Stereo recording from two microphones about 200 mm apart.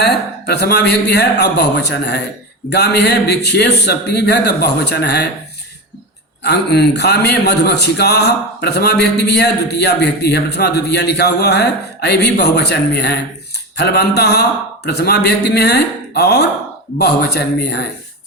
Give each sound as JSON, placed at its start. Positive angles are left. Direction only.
{"t": 0.0, "sound": "a man's voice", "side_deg": 55}
{"t": 6.4, "sound": "a man's voice", "side_deg": 55}